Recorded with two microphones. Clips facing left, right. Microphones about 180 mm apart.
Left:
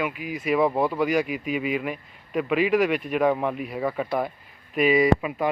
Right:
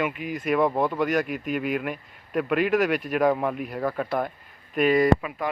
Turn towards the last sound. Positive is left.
turn(degrees=5)  # may be behind; listen again after turning